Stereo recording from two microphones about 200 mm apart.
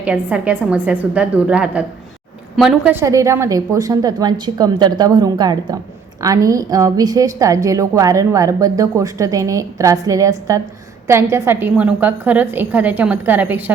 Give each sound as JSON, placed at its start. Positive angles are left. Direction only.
{"t": 0.0, "sound": "a woman's voice", "side_deg": -5}